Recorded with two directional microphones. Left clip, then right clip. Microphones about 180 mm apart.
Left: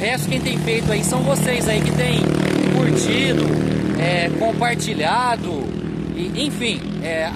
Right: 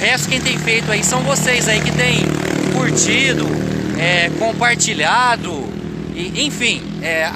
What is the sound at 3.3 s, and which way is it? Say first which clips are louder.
Speech: even; 35° right (ahead or behind).